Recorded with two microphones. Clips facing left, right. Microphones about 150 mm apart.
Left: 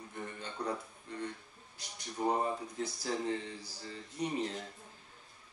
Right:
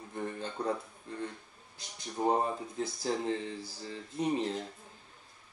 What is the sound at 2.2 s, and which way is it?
Speech, 30° right (ahead or behind).